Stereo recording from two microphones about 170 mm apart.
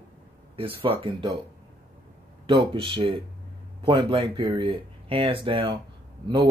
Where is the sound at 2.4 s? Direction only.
30° right (ahead or behind).